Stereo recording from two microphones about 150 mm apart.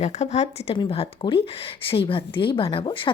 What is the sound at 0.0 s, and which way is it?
Speech, 45° left (ahead or behind).